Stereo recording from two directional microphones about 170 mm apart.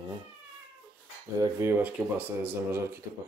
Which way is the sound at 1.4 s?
15° right (ahead or behind).